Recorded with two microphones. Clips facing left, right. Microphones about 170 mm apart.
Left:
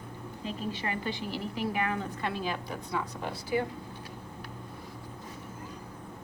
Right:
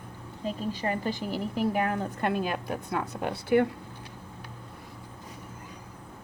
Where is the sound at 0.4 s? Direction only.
40° right (ahead or behind); by 3.7 s 60° right (ahead or behind).